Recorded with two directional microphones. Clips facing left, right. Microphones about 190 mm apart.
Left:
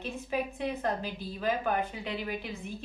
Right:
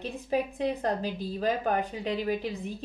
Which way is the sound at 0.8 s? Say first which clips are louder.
Right 3 dB; 35° right (ahead or behind).